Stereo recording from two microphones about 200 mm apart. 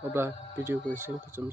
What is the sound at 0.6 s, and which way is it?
Speech, 10° right (ahead or behind).